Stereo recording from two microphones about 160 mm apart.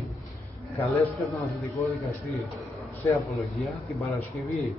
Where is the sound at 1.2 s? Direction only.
Centre (ahead or behind).